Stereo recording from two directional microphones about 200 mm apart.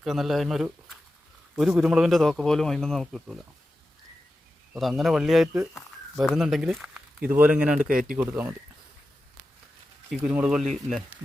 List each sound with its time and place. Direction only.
0.0 s speech: centre (ahead or behind)
4.7 s speech: centre (ahead or behind)
7.8 s speech: 45° right (ahead or behind)
8.2 s speech: 10° right (ahead or behind)
10.1 s speech: 5° right (ahead or behind)